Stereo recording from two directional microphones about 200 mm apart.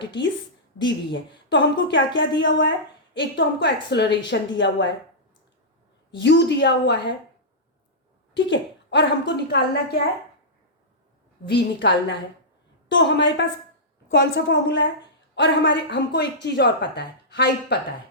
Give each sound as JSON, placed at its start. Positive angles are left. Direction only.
{"t": 0.8, "sound": "a woman's voice", "side_deg": 65}
{"t": 6.1, "sound": "a woman's voice", "side_deg": 65}
{"t": 8.3, "sound": "a woman's voice", "side_deg": 65}
{"t": 11.4, "sound": "a woman's voice", "side_deg": 60}